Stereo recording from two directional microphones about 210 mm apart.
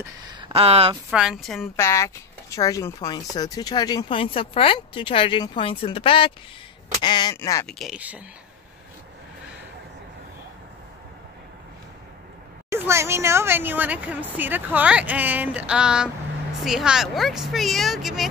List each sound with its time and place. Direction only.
0.0 s speech: 20° right (ahead or behind)
1.1 s speech: centre (ahead or behind)
1.8 s speech: 15° left (ahead or behind)
7.6 s speech: centre (ahead or behind)
12.7 s a woman's voice: 10° right (ahead or behind)